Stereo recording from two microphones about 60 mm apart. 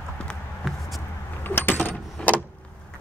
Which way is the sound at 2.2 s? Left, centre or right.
Centre.